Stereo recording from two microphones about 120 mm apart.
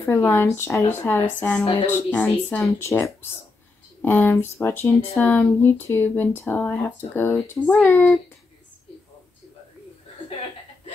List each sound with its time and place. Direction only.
0.0 s speech: 20° left (ahead or behind)
2.5 s speech: 20° left (ahead or behind)